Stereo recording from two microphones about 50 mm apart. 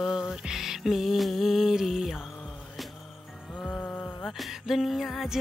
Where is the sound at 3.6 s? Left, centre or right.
Left.